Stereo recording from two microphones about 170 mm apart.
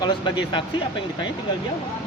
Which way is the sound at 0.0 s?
25° left (ahead or behind).